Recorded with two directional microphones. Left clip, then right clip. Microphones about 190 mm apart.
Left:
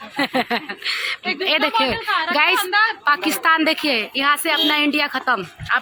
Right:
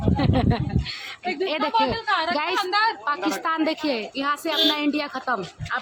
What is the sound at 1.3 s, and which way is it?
Speech, centre (ahead or behind).